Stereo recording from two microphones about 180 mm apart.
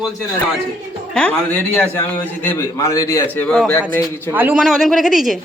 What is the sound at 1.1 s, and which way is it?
A man's voice, 5° left (ahead or behind).